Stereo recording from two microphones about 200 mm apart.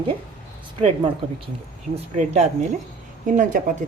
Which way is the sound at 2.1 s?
35° right (ahead or behind).